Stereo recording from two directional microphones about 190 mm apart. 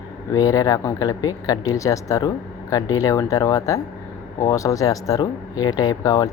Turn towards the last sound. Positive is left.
turn(degrees=20)  # may be behind; listen again after turning